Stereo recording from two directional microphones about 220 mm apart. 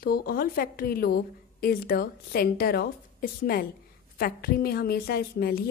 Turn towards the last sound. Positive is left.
turn(degrees=45)  # may be behind; listen again after turning